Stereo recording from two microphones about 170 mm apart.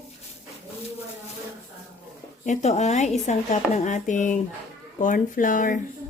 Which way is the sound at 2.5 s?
40° left (ahead or behind).